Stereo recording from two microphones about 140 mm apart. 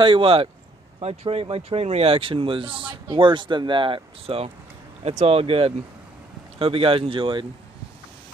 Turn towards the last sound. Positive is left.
turn(degrees=-35)  # may be behind; listen again after turning